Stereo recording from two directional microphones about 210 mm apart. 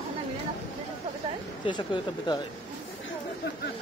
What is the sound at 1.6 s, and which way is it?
Speech, 20° left (ahead or behind).